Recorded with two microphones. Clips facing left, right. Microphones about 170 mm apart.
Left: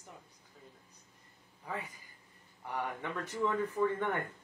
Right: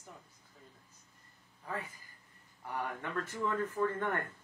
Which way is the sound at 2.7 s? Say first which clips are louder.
Even; 15° left (ahead or behind).